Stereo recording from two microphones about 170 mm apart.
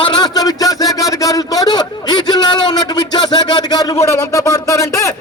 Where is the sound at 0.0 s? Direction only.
25° left (ahead or behind).